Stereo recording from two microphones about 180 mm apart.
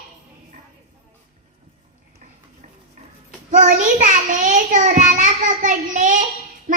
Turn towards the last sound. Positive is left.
turn(degrees=-45)  # may be behind; listen again after turning